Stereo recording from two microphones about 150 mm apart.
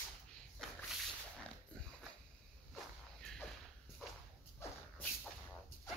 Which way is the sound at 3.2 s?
5° left (ahead or behind).